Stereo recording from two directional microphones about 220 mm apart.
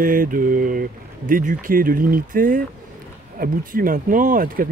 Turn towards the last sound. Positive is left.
turn(degrees=-40)  # may be behind; listen again after turning